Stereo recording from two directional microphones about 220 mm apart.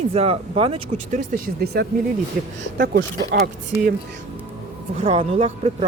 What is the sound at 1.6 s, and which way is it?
Speech, 45° right (ahead or behind).